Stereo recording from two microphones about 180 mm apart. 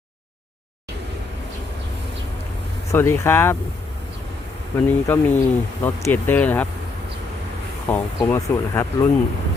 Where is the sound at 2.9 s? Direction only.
15° left (ahead or behind).